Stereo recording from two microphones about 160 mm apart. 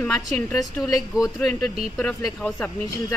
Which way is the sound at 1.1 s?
5° right (ahead or behind).